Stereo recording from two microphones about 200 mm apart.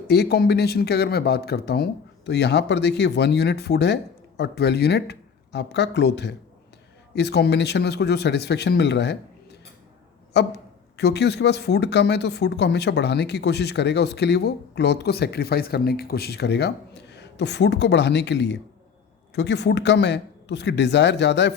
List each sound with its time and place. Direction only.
0.1 s a man's voice: 55° left (ahead or behind)